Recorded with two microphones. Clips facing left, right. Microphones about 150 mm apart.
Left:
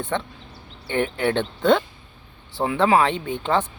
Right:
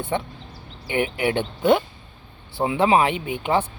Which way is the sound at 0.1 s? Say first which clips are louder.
Right 3 dB; 15° right (ahead or behind).